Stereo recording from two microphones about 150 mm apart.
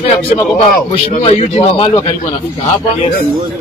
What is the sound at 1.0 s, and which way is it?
A man's voice, 40° left (ahead or behind).